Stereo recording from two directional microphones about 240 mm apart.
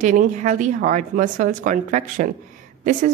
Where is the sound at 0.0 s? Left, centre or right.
Right.